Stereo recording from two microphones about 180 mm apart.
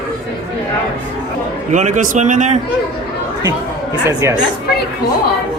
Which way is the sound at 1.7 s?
45° right (ahead or behind).